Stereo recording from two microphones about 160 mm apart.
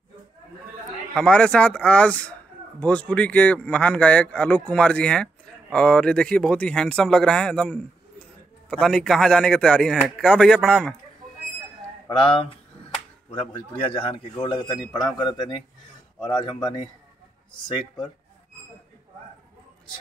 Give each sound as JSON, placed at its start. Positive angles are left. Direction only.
{"t": 1.1, "sound": "a man's voice", "side_deg": 5}
{"t": 12.1, "sound": "speech", "side_deg": 35}